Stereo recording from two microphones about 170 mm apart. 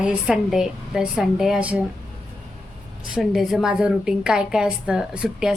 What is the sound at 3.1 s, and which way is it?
A woman's voice, centre (ahead or behind).